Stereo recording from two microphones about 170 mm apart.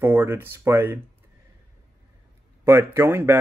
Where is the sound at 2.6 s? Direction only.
15° right (ahead or behind).